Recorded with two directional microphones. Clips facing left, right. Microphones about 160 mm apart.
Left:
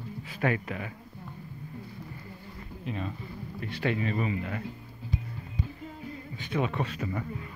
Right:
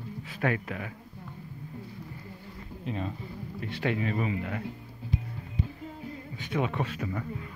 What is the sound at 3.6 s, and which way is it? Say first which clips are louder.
Speech: even; 20° right (ahead or behind).